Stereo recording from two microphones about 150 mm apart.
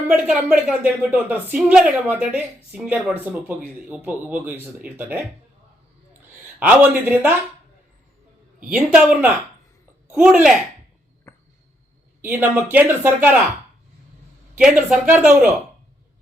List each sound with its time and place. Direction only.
0.1 s speech: 5° right (ahead or behind)
6.6 s speech: 10° right (ahead or behind)
8.7 s speech: 5° right (ahead or behind)
11.3 s a sound: 20° left (ahead or behind)
12.2 s speech: 10° right (ahead or behind)
14.6 s speech: 5° right (ahead or behind)